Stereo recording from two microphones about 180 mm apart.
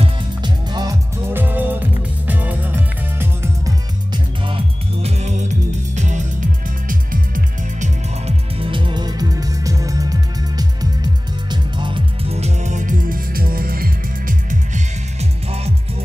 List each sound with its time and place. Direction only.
0.0 s music: 25° right (ahead or behind)
1.3 s music: 10° right (ahead or behind)
4.1 s music: 30° right (ahead or behind)
5.9 s music: 40° right (ahead or behind); by 10.1 s 20° right (ahead or behind)
11.5 s music: 25° right (ahead or behind)